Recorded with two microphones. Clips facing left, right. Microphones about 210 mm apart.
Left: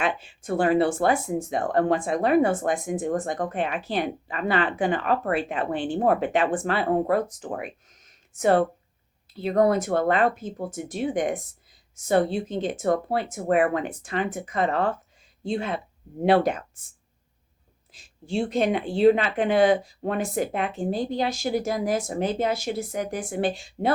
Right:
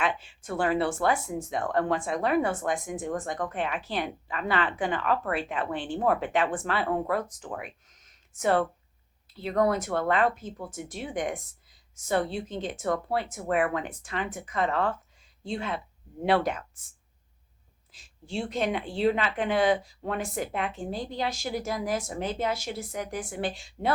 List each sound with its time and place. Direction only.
0.0 s a woman's voice: 45° left (ahead or behind)
18.3 s speech: 45° left (ahead or behind)